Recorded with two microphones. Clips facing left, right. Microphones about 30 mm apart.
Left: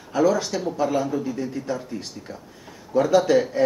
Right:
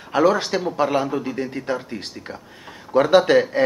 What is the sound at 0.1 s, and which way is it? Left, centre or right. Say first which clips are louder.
Speech: right 3 dB; right.